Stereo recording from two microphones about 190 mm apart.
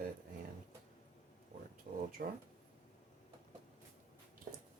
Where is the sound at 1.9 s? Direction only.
45° right (ahead or behind).